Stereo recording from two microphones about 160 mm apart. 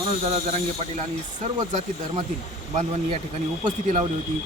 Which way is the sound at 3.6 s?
50° right (ahead or behind).